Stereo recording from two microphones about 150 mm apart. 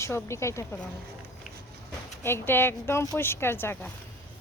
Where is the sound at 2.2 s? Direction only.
15° left (ahead or behind).